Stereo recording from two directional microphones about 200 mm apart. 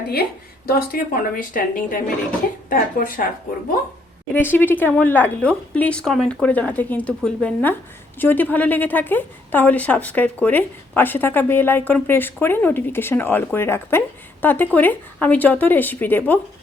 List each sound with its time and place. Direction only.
0.7 s a woman's voice: 50° left (ahead or behind)
4.4 s a woman's voice: 10° left (ahead or behind)